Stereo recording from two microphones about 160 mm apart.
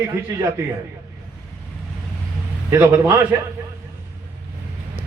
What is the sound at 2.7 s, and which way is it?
Speech, 15° right (ahead or behind).